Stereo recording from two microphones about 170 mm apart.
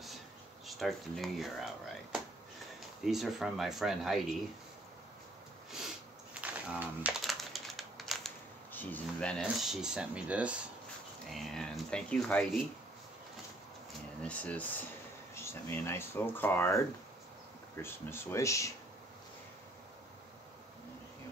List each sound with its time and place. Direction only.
0.7 s speech: centre (ahead or behind)
3.1 s speech: centre (ahead or behind)
6.4 s crumpling: 10° right (ahead or behind)
8.7 s speech: 10° left (ahead or behind)
14.2 s speech: 5° left (ahead or behind)
17.8 s speech: 15° left (ahead or behind)